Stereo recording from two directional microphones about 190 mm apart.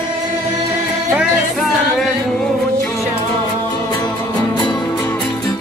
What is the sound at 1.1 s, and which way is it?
Music, centre (ahead or behind).